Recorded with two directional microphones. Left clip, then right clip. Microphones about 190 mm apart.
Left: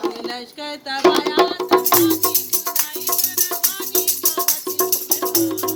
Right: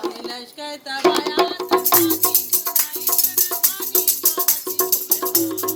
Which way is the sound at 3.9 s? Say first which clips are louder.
Left 2 dB; 15° left (ahead or behind).